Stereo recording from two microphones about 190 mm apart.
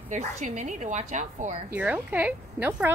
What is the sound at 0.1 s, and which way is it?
A woman's voice, 40° right (ahead or behind).